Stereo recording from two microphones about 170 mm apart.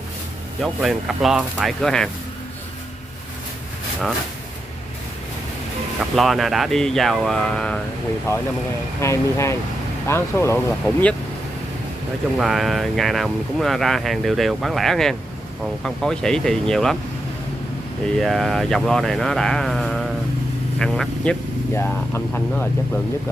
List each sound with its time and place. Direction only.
0.6 s speech: centre (ahead or behind)
5.9 s speech: centre (ahead or behind)
12.4 s speech: centre (ahead or behind)
18.2 s speech: centre (ahead or behind)